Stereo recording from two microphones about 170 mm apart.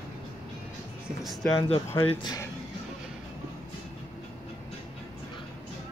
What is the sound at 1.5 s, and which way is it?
Speech, 35° left (ahead or behind).